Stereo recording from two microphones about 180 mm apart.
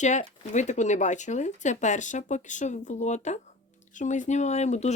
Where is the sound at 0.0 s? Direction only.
40° left (ahead or behind).